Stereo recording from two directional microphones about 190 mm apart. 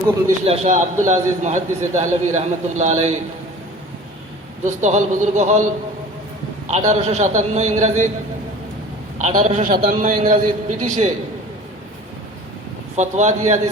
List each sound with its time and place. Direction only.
0.3 s a man's voice: 35° right (ahead or behind)
4.6 s a man's voice: 40° right (ahead or behind)
6.7 s a man's voice: 35° right (ahead or behind)
9.1 s a man's voice: 45° right (ahead or behind)
13.0 s a man's voice: 40° right (ahead or behind)